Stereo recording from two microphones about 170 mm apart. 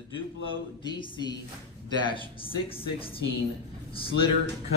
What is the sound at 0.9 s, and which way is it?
A woman's voice, 25° left (ahead or behind).